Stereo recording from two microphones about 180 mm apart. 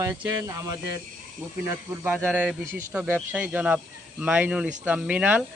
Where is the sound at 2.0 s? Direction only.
10° right (ahead or behind).